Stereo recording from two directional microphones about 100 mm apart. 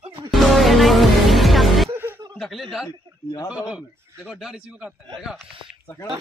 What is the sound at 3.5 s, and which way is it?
A man's voice, 10° right (ahead or behind).